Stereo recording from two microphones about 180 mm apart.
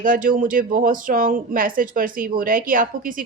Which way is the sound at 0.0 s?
50° right (ahead or behind).